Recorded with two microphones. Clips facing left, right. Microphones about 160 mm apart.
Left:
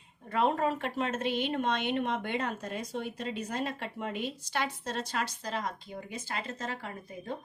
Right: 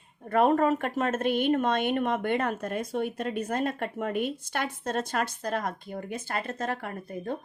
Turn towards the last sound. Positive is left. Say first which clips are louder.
# right 5 dB
turn(degrees=-55)  # may be behind; listen again after turning